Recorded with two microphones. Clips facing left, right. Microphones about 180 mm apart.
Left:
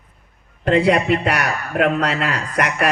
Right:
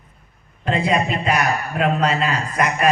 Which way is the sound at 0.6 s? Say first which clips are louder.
Left 4 dB; 75° left (ahead or behind).